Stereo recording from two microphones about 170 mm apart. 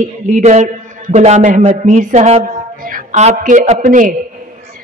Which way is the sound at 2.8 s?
50° right (ahead or behind).